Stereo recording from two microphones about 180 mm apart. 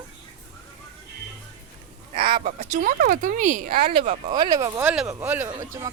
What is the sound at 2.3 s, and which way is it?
Speech, 50° right (ahead or behind).